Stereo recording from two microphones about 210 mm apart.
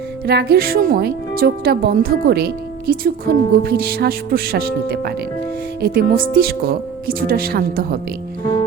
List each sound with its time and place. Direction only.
0.3 s speech: 45° right (ahead or behind)